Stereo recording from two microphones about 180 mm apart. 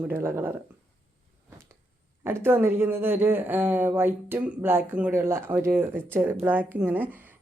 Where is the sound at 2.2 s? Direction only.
15° right (ahead or behind).